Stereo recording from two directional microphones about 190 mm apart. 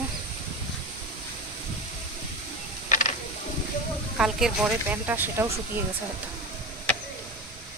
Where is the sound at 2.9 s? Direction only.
40° left (ahead or behind).